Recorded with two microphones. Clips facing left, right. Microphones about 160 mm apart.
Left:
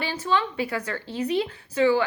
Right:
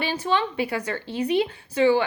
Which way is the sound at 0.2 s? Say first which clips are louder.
Left 1 dB; 20° right (ahead or behind).